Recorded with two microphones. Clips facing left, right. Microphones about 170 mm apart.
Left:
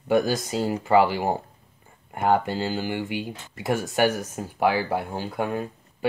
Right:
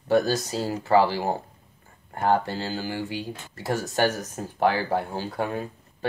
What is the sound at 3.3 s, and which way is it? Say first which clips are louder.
Speech: left 2 dB; 15° left (ahead or behind).